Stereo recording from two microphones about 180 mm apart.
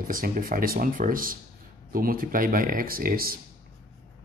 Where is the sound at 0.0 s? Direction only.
50° right (ahead or behind).